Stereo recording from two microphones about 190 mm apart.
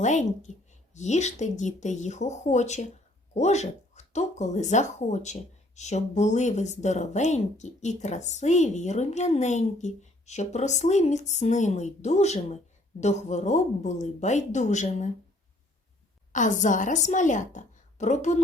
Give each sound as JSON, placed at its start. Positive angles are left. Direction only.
{"t": 0.0, "sound": "speech", "side_deg": 40}
{"t": 16.3, "sound": "speech", "side_deg": 40}